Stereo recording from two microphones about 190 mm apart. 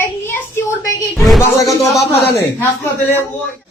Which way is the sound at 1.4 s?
15° left (ahead or behind).